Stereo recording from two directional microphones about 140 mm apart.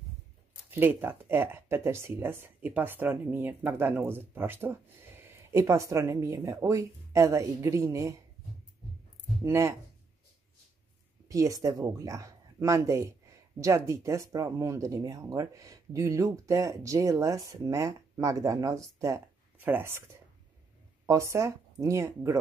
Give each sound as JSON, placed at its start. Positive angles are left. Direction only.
{"t": 0.7, "sound": "speech", "side_deg": -15}
{"t": 9.4, "sound": "speech", "side_deg": -20}
{"t": 11.2, "sound": "speech", "side_deg": -25}